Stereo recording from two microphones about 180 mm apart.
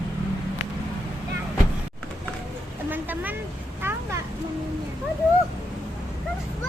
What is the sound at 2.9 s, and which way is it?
Vehicle, 10° right (ahead or behind).